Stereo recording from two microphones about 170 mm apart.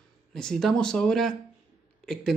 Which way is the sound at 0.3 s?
5° left (ahead or behind).